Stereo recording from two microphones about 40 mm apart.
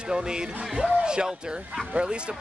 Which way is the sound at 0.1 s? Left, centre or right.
Centre.